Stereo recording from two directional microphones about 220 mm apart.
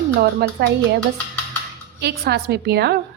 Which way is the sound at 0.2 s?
45° right (ahead or behind).